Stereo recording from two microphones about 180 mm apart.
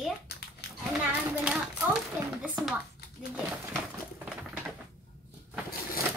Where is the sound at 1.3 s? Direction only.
5° right (ahead or behind).